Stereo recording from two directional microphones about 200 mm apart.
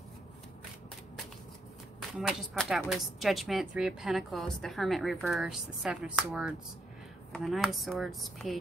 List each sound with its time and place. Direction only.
2.0 s a woman's voice: centre (ahead or behind)